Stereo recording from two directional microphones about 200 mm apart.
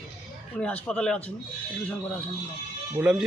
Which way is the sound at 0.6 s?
5° left (ahead or behind).